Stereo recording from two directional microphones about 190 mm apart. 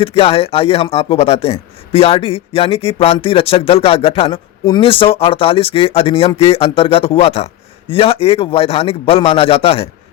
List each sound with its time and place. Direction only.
0.0 s speech: 30° left (ahead or behind)